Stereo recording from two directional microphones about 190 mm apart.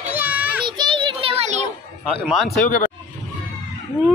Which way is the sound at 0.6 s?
25° right (ahead or behind).